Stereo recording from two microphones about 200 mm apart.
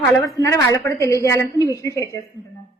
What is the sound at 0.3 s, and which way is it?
A woman's voice, 15° left (ahead or behind).